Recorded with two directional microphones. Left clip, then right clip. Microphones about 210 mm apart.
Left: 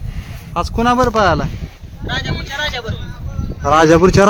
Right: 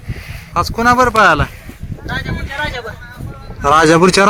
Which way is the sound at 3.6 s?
5° right (ahead or behind).